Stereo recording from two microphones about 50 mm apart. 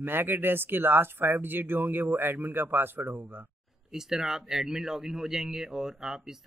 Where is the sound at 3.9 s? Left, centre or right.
Centre.